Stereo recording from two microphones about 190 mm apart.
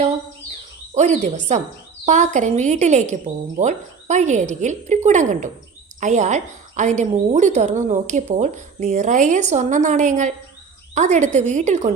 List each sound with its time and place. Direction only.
0.9 s a woman's voice: 40° right (ahead or behind)